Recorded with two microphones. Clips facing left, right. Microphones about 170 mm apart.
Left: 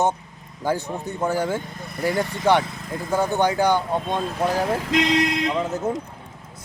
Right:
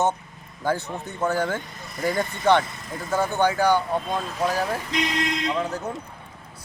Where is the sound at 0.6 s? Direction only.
15° left (ahead or behind).